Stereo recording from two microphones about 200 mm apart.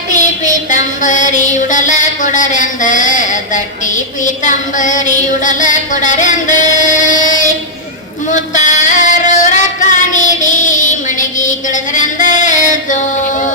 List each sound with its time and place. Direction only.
0.1 s music: 40° left (ahead or behind)